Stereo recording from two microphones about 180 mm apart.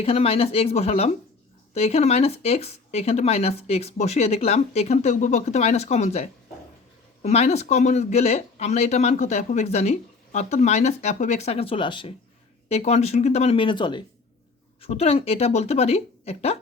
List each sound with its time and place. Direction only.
0.0 s speech: 30° left (ahead or behind)